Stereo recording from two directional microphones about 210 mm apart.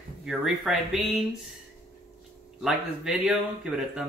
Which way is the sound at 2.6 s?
5° right (ahead or behind).